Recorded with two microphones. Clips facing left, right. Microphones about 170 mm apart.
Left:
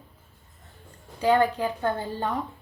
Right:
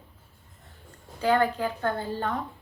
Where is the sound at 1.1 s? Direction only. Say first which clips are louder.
Left 2 dB; 15° left (ahead or behind).